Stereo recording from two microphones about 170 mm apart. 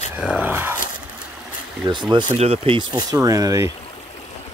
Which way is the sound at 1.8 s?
25° right (ahead or behind).